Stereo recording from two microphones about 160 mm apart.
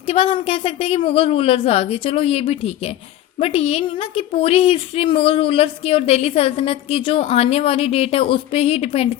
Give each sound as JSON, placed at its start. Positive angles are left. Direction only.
{"t": 0.1, "sound": "a woman's voice", "side_deg": 35}